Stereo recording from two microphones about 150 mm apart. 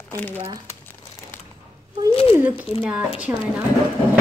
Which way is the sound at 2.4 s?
10° right (ahead or behind).